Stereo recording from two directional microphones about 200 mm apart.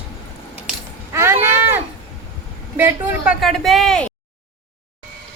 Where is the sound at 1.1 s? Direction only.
15° right (ahead or behind).